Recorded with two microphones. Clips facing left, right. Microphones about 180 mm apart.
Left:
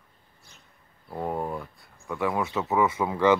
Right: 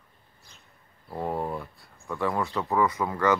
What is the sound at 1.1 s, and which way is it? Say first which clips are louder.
Speech: even; centre (ahead or behind).